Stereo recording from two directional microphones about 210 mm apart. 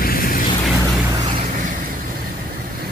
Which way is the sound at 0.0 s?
45° left (ahead or behind).